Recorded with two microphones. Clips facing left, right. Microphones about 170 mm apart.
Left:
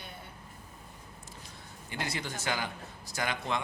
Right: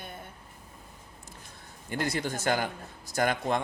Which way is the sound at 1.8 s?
50° right (ahead or behind).